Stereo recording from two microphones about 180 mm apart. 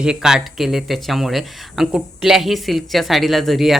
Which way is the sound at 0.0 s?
5° right (ahead or behind).